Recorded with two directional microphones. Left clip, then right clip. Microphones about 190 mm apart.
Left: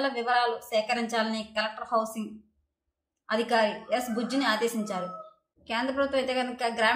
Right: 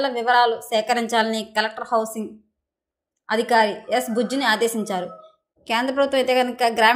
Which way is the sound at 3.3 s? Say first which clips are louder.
Right 7 dB; 40° right (ahead or behind).